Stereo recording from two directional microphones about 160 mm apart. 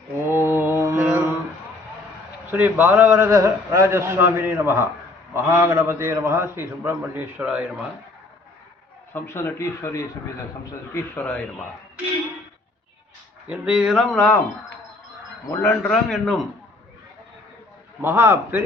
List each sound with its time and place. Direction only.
0.3 s mantra: 15° right (ahead or behind)
2.5 s a man's voice: 10° right (ahead or behind)
9.1 s speech: 15° left (ahead or behind)
13.5 s speech: 5° right (ahead or behind)
15.4 s speech: 15° left (ahead or behind)
15.9 s speech: centre (ahead or behind)
18.0 s a man's voice: 15° right (ahead or behind)